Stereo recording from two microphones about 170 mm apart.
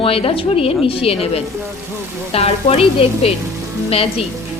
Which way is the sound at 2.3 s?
35° left (ahead or behind).